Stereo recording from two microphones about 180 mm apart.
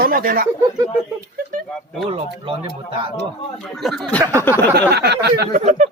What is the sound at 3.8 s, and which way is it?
Speech, centre (ahead or behind).